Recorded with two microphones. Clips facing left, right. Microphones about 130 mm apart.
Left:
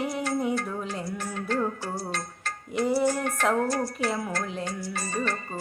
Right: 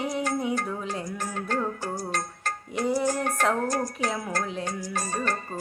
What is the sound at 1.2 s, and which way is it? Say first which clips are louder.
Music: left 1 dB; 45° right (ahead or behind).